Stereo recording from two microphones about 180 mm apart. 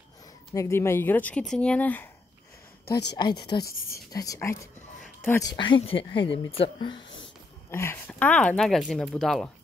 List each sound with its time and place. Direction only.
0.6 s speech: 15° left (ahead or behind)
2.8 s speech: 65° left (ahead or behind)
3.2 s speech: 25° left (ahead or behind)
7.7 s speech: 15° left (ahead or behind)